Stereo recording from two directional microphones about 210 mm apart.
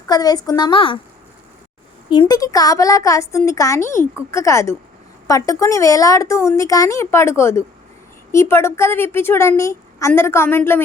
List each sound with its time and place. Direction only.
0.1 s a woman's voice: 20° left (ahead or behind)
2.0 s a woman's voice: 20° left (ahead or behind)